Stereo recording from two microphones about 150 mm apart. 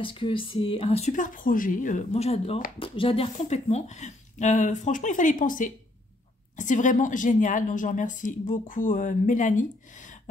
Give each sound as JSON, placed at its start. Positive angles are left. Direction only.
{"t": 0.0, "sound": "speech", "side_deg": 35}
{"t": 3.3, "sound": "a woman's voice", "side_deg": 45}